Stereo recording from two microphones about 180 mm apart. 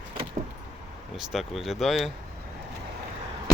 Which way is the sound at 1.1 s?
Centre (ahead or behind).